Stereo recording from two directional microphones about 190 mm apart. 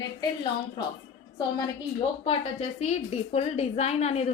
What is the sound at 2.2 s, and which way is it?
A woman's voice, 30° left (ahead or behind).